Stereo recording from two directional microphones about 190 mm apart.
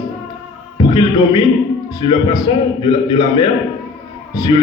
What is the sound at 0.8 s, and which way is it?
A man's voice, 20° left (ahead or behind).